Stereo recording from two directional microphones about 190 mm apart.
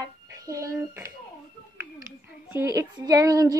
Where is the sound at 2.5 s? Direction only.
10° right (ahead or behind).